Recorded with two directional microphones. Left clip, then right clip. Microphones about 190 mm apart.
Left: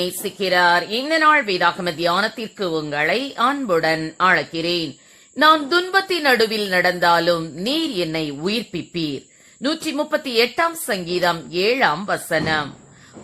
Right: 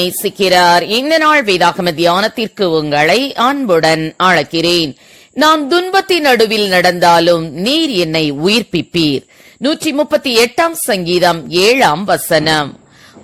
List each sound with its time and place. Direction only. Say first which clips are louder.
0.0 s a woman's voice: right 9 dB; 45° right (ahead or behind)